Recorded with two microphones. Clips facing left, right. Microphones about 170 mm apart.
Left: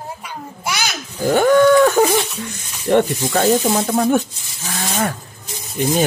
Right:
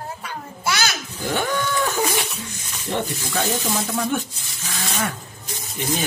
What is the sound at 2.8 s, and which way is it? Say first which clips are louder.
Speech: left 11 dB; 60° left (ahead or behind).